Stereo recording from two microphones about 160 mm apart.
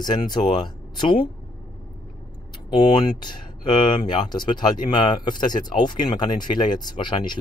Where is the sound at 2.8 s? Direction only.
25° left (ahead or behind).